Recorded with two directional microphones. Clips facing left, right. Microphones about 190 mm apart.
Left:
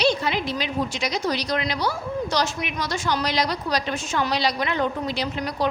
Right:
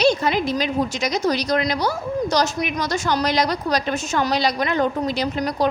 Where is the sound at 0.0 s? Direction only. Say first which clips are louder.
Right 4 dB; 45° right (ahead or behind).